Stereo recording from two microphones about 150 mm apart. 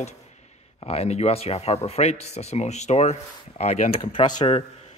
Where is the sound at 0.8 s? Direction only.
45° left (ahead or behind).